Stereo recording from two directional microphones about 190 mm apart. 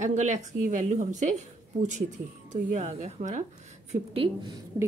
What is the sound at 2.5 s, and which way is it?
Speech, 40° right (ahead or behind).